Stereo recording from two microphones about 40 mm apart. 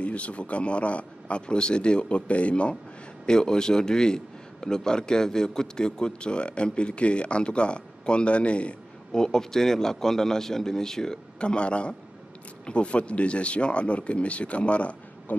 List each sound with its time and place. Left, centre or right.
0.0 s a man's voice: left
3.3 s a man's voice: centre
9.1 s a man's voice: centre; by 15.0 s left